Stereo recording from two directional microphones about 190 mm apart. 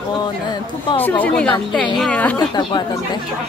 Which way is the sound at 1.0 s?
10° left (ahead or behind).